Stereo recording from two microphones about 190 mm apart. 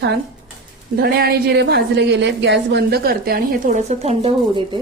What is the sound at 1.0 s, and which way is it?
A woman's voice, 55° right (ahead or behind).